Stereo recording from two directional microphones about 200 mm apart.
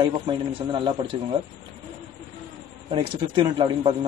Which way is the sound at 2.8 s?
25° right (ahead or behind).